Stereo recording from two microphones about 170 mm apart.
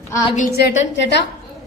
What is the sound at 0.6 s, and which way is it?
Speech, 80° left.